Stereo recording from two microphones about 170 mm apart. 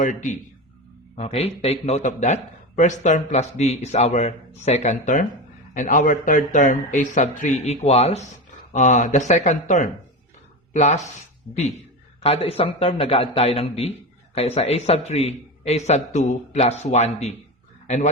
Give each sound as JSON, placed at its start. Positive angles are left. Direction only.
{"t": 0.0, "sound": "speech", "side_deg": 50}
{"t": 1.1, "sound": "a man's voice", "side_deg": 35}
{"t": 12.2, "sound": "a man's voice", "side_deg": 35}